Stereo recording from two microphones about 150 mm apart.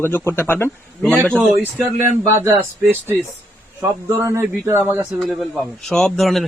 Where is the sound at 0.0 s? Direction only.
15° left (ahead or behind).